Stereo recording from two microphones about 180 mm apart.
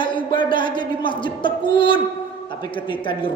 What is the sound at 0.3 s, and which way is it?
A woman's voice, 25° left (ahead or behind).